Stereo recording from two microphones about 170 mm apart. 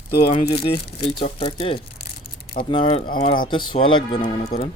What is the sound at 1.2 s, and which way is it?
Speech, 30° left (ahead or behind).